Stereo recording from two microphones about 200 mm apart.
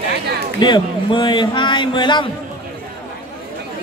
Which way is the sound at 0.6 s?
20° left (ahead or behind).